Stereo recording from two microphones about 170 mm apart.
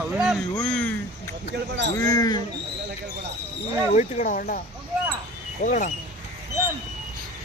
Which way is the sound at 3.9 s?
45° left (ahead or behind).